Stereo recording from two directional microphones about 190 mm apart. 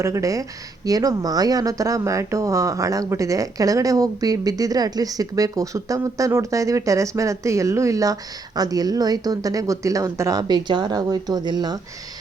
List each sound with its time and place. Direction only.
0.0 s speech: 15° right (ahead or behind)